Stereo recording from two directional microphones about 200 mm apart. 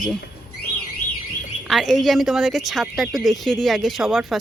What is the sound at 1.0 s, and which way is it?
Alarm, 45° left (ahead or behind).